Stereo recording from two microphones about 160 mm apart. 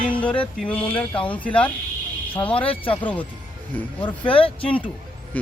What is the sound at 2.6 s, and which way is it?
Speech, 35° left (ahead or behind).